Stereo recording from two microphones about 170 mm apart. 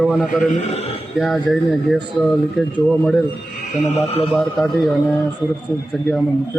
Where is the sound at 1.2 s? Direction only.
Centre (ahead or behind).